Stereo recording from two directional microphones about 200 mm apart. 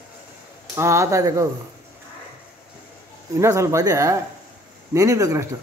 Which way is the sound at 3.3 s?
15° right (ahead or behind).